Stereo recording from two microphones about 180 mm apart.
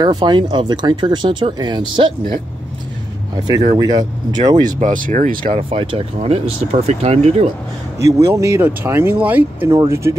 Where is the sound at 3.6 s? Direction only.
20° right (ahead or behind).